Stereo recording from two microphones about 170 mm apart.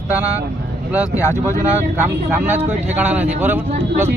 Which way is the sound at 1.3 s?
20° left (ahead or behind).